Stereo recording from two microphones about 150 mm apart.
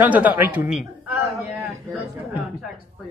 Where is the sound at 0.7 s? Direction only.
5° right (ahead or behind).